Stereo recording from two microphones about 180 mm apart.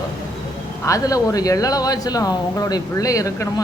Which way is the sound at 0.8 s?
20° left (ahead or behind).